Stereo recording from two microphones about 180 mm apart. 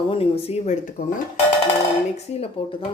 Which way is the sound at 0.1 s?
30° left (ahead or behind).